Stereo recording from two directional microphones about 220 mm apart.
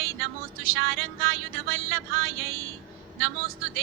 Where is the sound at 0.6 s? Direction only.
65° right (ahead or behind).